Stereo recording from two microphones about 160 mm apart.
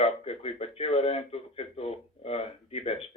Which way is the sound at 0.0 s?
40° left (ahead or behind).